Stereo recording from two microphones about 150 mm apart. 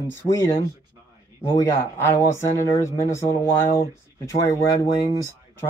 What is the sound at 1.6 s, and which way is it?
Speech, 20° left (ahead or behind).